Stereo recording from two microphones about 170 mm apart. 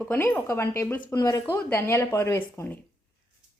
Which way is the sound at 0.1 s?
10° left (ahead or behind).